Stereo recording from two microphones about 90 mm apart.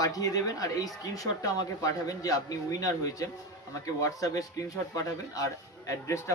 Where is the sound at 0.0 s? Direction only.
40° left (ahead or behind).